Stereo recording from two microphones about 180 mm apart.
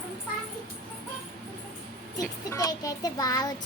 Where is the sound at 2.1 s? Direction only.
20° left (ahead or behind).